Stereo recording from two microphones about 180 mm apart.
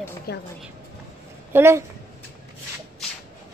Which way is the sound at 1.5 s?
15° right (ahead or behind).